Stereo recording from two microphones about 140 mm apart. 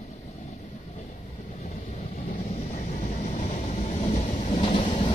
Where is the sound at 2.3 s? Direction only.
50° left (ahead or behind).